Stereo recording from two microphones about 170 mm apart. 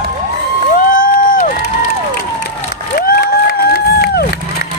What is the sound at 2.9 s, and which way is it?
Crowd, 60° left (ahead or behind).